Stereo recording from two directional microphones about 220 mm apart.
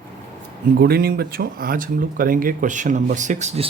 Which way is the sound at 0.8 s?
45° right (ahead or behind).